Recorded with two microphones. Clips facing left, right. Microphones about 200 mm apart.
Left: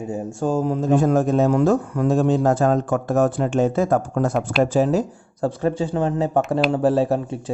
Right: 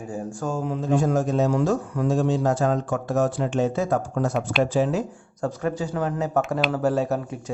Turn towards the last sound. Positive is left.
turn(degrees=30)  # may be behind; listen again after turning